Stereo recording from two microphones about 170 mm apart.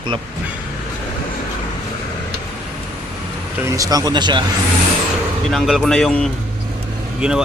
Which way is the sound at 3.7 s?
20° right (ahead or behind).